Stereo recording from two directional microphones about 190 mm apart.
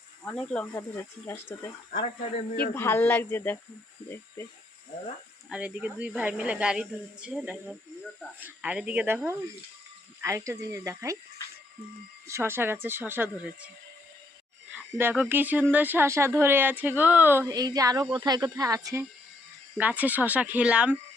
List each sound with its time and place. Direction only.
0.3 s speech: 10° left (ahead or behind)
2.7 s speech: 10° left (ahead or behind)
5.5 s speech: 5° right (ahead or behind)
12.3 s speech: 10° right (ahead or behind)
14.9 s speech: 10° right (ahead or behind)
19.7 s speech: 5° right (ahead or behind)